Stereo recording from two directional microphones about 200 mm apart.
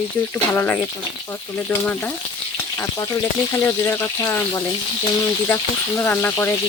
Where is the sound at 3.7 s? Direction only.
10° left (ahead or behind).